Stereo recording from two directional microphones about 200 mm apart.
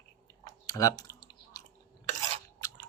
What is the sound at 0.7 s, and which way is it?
Typing, 20° left (ahead or behind).